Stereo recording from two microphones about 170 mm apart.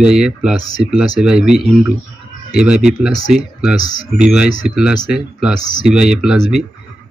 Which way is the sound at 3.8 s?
25° left (ahead or behind).